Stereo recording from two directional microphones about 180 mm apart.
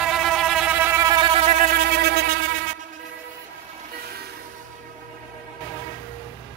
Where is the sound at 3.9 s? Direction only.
60° right (ahead or behind).